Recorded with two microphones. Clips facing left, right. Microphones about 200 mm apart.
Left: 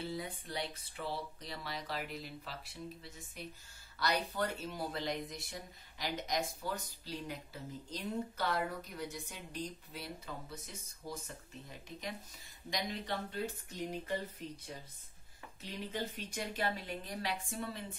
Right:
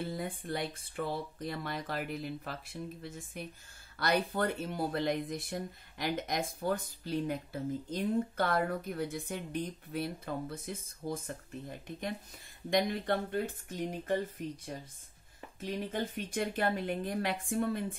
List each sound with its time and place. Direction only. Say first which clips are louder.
0.0 s speech: right 4 dB; 50° right (ahead or behind)
12.6 s speech: right 9 dB; 55° right (ahead or behind)